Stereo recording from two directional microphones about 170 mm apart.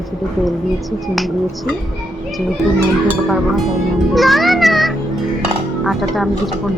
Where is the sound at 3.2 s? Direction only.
Centre (ahead or behind).